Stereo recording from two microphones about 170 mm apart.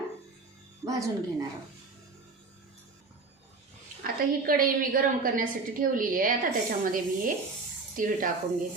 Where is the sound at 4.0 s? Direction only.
60° right (ahead or behind).